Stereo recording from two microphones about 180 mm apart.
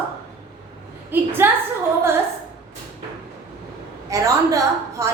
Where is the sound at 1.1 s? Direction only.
10° right (ahead or behind).